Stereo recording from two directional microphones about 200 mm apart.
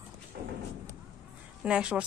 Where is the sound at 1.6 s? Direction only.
5° right (ahead or behind).